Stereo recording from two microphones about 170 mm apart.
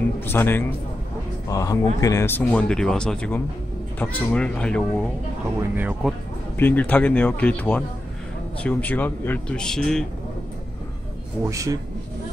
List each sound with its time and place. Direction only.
0.2 s speech: 10° left (ahead or behind)
5.8 s speech: 10° right (ahead or behind)
6.6 s speech: 10° left (ahead or behind)
11.4 s a man's voice: 20° right (ahead or behind)